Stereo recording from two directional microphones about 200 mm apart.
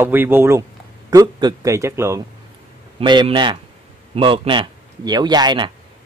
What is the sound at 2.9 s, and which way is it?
A man's voice, 25° right (ahead or behind).